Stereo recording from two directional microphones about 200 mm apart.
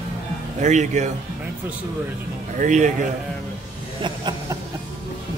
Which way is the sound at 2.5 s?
35° right (ahead or behind).